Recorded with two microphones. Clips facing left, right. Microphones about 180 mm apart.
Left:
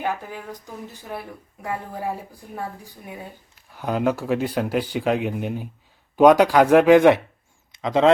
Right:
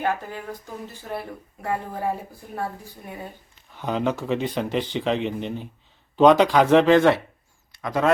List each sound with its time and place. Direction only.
0.0 s speech: 10° left (ahead or behind)
3.7 s speech: 5° left (ahead or behind); by 8.1 s 20° left (ahead or behind)